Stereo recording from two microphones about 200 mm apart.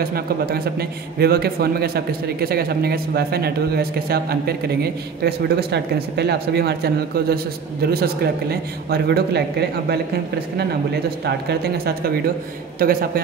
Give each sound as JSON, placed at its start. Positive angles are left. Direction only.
{"t": 0.0, "sound": "a man's voice", "side_deg": -50}
{"t": 11.2, "sound": "a man's voice", "side_deg": -55}